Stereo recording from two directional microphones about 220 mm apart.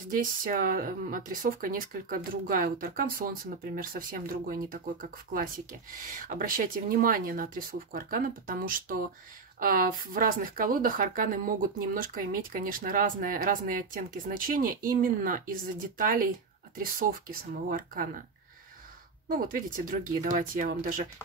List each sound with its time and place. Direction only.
0.1 s speech: 40° right (ahead or behind)
19.2 s speech: 40° right (ahead or behind)